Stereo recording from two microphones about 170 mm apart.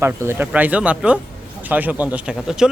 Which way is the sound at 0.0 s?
15° right (ahead or behind).